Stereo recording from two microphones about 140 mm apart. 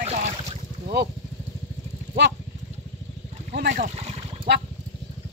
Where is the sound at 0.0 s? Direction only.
50° right (ahead or behind).